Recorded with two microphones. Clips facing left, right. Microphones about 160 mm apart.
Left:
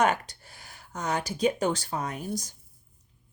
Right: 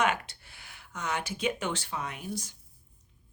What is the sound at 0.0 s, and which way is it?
A woman's voice, 40° left (ahead or behind).